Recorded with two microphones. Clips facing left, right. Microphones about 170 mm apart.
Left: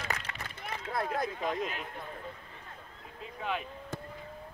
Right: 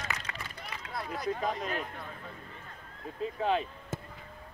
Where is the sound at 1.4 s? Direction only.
45° right (ahead or behind).